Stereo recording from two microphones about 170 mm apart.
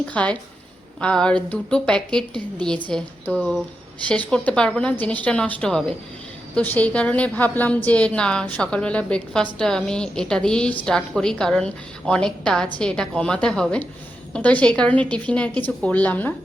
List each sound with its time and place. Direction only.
0.1 s a woman's voice: 5° left (ahead or behind)